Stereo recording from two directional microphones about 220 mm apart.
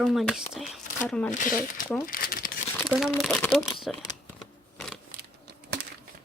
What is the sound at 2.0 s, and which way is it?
Crumpling, 40° left (ahead or behind).